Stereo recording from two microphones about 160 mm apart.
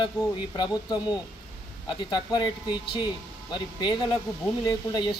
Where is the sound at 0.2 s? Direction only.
25° left (ahead or behind).